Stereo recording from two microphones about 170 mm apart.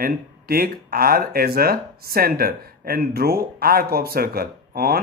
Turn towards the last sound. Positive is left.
turn(degrees=-65)  # may be behind; listen again after turning